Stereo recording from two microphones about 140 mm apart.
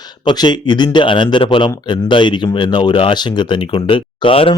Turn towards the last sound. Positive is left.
turn(degrees=40)  # may be behind; listen again after turning